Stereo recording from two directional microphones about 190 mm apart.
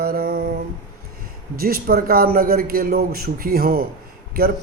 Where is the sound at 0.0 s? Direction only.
50° right (ahead or behind).